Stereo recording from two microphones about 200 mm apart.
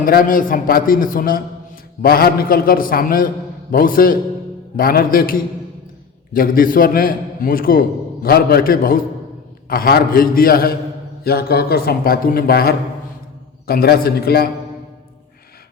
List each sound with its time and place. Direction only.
0.0 s a man's voice: 45° left (ahead or behind)